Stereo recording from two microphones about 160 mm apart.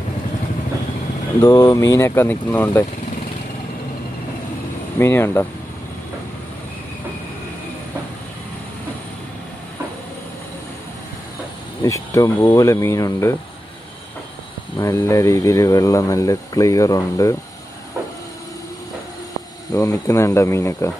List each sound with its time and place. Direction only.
1.4 s speech: 15° left (ahead or behind)
4.9 s speech: 15° left (ahead or behind)
11.8 s speech: 20° left (ahead or behind)
14.8 s speech: 20° left (ahead or behind)
19.7 s speech: 20° left (ahead or behind)